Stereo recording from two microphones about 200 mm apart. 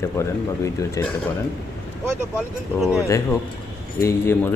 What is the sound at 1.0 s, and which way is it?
Speech, 15° left (ahead or behind).